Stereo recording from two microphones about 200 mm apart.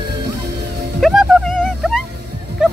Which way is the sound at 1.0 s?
Centre (ahead or behind).